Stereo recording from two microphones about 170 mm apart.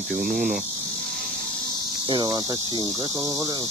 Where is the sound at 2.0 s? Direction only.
25° right (ahead or behind).